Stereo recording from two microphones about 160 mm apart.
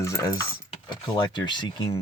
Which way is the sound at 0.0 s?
20° left (ahead or behind).